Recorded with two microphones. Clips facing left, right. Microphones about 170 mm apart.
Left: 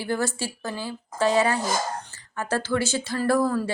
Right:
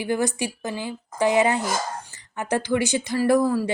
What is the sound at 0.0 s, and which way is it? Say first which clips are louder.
A woman's voice: right 3 dB; 15° right (ahead or behind).